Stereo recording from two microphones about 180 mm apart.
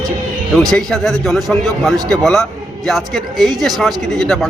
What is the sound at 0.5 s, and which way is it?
A man's voice, centre (ahead or behind).